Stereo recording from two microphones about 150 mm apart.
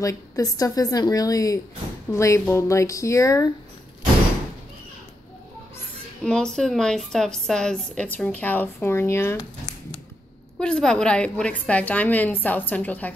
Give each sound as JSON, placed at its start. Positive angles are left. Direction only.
{"t": 0.0, "sound": "a woman's voice", "side_deg": 25}
{"t": 6.2, "sound": "speech", "side_deg": 5}
{"t": 10.6, "sound": "a woman's voice", "side_deg": 5}